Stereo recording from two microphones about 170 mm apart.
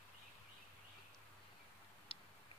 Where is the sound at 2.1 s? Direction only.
30° left (ahead or behind).